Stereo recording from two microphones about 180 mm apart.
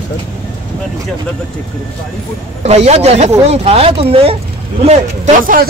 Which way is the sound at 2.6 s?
35° right (ahead or behind).